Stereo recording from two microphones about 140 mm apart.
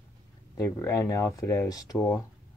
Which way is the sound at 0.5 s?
20° left (ahead or behind).